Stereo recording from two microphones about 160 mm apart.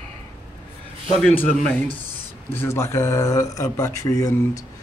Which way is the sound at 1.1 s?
5° left (ahead or behind).